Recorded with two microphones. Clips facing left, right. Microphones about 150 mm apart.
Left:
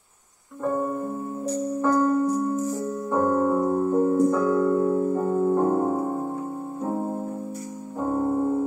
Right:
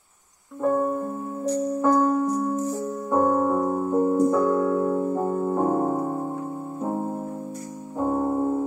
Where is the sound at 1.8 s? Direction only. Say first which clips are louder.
Even; 15° right (ahead or behind).